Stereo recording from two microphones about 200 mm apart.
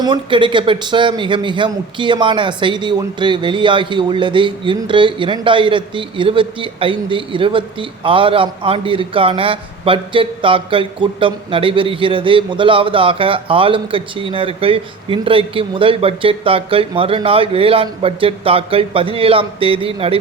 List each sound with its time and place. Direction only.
0.0 s speech: 25° right (ahead or behind)